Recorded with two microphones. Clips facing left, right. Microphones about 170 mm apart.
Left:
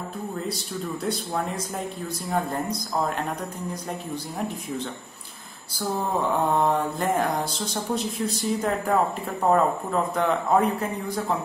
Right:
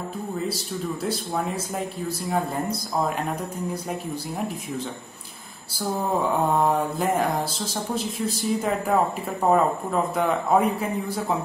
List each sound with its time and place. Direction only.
1.0 s speech: 5° right (ahead or behind)
6.6 s speech: 5° right (ahead or behind)